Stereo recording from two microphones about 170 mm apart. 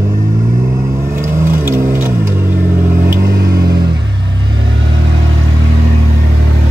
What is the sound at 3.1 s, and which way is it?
Vehicle, 70° right (ahead or behind).